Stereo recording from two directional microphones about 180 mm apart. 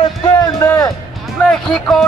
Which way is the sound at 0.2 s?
20° left (ahead or behind).